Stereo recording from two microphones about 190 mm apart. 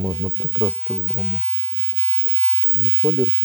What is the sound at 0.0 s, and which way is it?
Speech, 15° right (ahead or behind).